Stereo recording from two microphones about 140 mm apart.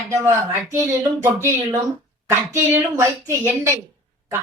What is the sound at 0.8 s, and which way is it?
Speech, 20° right (ahead or behind).